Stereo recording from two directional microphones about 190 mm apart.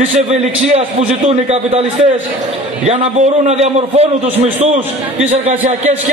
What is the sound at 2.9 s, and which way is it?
A man's voice, 35° right (ahead or behind).